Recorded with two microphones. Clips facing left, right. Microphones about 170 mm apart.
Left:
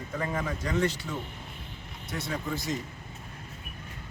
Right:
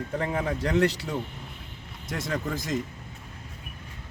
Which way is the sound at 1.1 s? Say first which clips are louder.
Right 4 dB; 40° right (ahead or behind).